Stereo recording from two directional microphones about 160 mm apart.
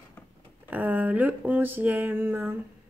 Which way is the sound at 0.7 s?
10° right (ahead or behind).